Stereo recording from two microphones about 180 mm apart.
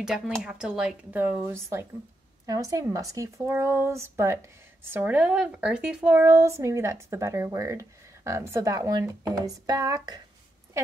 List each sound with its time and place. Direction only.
0.0 s speech: centre (ahead or behind); by 10.2 s 20° right (ahead or behind)